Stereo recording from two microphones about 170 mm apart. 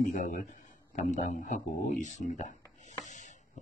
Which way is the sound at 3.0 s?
45° left (ahead or behind).